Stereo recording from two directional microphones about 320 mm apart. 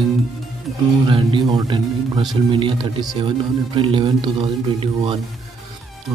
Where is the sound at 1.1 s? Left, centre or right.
Centre.